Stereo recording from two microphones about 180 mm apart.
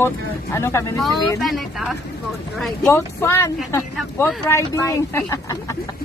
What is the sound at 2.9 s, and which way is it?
Speech, 15° left (ahead or behind).